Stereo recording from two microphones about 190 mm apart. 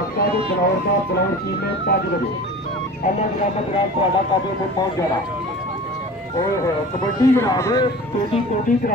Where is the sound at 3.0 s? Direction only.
45° left (ahead or behind).